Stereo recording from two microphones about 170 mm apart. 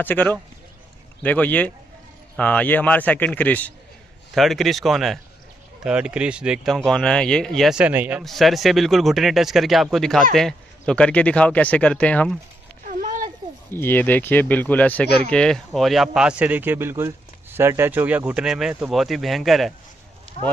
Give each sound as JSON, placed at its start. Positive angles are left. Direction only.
{"t": 0.0, "sound": "a man's voice", "side_deg": 10}
{"t": 8.2, "sound": "a man's voice", "side_deg": 0}
{"t": 12.8, "sound": "a sound", "side_deg": -50}
{"t": 13.7, "sound": "a man's voice", "side_deg": 10}